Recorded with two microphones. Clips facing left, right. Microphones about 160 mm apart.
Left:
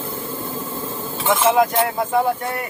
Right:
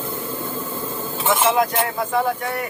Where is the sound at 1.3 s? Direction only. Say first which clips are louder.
Left 2 dB; 5° left (ahead or behind).